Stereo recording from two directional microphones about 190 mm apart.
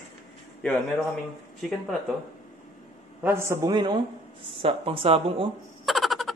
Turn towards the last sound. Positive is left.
turn(degrees=0)  # may be behind; listen again after turning